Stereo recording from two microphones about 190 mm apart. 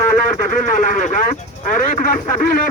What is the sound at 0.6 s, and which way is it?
Speech, 45° left (ahead or behind).